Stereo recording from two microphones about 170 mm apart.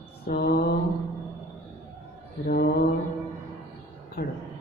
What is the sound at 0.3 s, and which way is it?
Mantra, 70° left (ahead or behind).